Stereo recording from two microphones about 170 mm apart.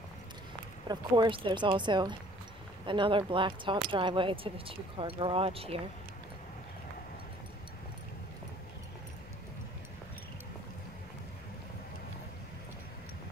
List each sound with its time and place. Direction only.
0.8 s speech: 25° right (ahead or behind)